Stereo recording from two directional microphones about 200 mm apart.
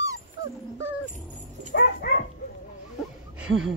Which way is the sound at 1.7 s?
55° left (ahead or behind).